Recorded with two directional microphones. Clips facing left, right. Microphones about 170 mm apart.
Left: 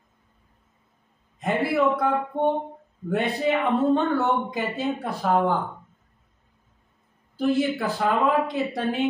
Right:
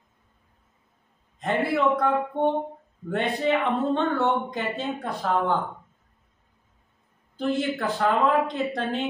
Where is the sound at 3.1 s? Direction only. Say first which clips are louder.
Left 1 dB; 5° left (ahead or behind).